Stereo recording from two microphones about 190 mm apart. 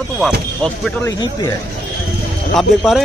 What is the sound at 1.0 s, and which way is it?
Speech, 20° left (ahead or behind).